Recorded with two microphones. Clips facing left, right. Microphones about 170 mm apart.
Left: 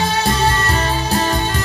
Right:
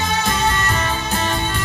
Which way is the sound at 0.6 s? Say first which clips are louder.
Left 3 dB; 35° left (ahead or behind).